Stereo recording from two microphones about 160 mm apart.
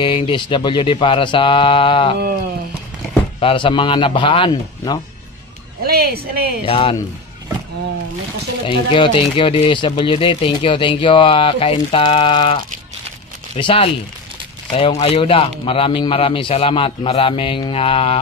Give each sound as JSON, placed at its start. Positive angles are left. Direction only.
{"t": 0.0, "sound": "speech", "side_deg": 30}
{"t": 3.3, "sound": "speech", "side_deg": 35}
{"t": 5.9, "sound": "speech", "side_deg": -80}
{"t": 6.6, "sound": "speech", "side_deg": 35}
{"t": 8.6, "sound": "speech", "side_deg": 30}